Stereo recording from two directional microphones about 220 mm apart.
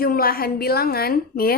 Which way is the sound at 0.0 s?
40° left (ahead or behind).